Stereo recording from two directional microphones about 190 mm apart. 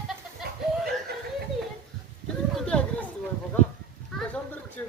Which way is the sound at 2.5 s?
5° left (ahead or behind).